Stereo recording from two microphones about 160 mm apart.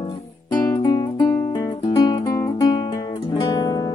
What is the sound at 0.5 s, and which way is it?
Guitar, 25° left (ahead or behind).